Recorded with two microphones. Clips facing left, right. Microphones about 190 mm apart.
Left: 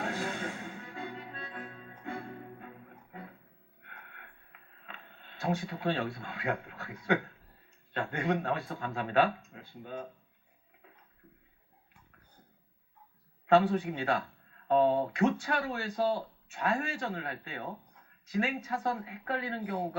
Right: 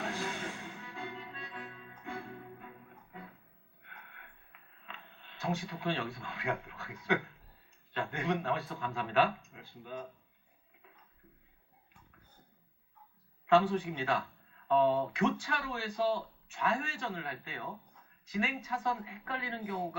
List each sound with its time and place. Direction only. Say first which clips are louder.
0.0 s music: left 3 dB; 45° left (ahead or behind)
4.9 s a man's voice: left 1 dB; 45° left (ahead or behind)
13.6 s a man's voice: left 2 dB; 45° left (ahead or behind)